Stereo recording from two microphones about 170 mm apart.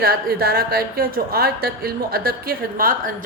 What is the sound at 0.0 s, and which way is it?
A woman's voice, 65° right (ahead or behind).